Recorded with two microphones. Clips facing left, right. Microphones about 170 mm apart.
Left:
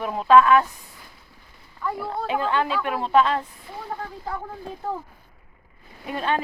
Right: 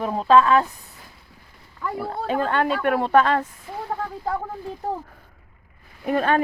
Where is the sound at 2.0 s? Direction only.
45° right (ahead or behind).